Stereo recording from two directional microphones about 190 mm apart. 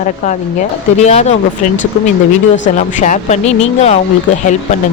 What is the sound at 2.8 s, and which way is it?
Speech, 40° left (ahead or behind).